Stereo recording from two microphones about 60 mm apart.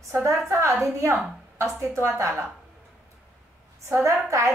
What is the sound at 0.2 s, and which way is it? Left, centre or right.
Speech, right.